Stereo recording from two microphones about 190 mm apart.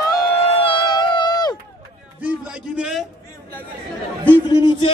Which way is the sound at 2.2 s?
5° right (ahead or behind).